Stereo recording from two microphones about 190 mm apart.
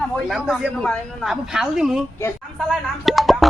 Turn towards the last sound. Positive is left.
turn(degrees=0)  # may be behind; listen again after turning